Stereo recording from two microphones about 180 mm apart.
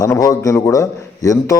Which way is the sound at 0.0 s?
20° left (ahead or behind).